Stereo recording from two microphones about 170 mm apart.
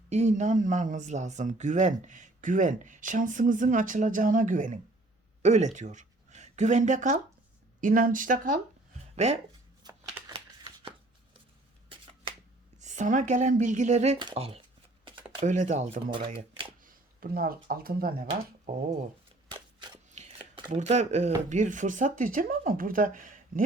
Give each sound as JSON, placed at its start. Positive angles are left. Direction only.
{"t": 0.1, "sound": "speech", "side_deg": -40}
{"t": 9.1, "sound": "speech", "side_deg": -40}
{"t": 9.8, "sound": "a sound", "side_deg": -25}
{"t": 10.3, "sound": "shuffling cards", "side_deg": -30}
{"t": 12.8, "sound": "speech", "side_deg": -45}
{"t": 14.2, "sound": "speech", "side_deg": -30}
{"t": 15.0, "sound": "shuffling cards", "side_deg": -30}
{"t": 15.4, "sound": "speech", "side_deg": -45}
{"t": 16.1, "sound": "speech", "side_deg": -30}
{"t": 16.8, "sound": "speech", "side_deg": -55}
{"t": 20.1, "sound": "chopping", "side_deg": -40}
{"t": 20.7, "sound": "speech", "side_deg": -45}